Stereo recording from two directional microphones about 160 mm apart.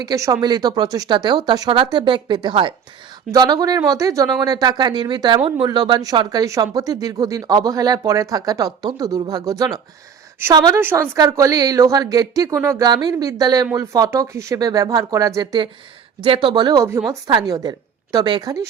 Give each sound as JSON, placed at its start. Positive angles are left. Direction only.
{"t": 0.0, "sound": "speech", "side_deg": -20}
{"t": 10.8, "sound": "a woman's voice", "side_deg": -15}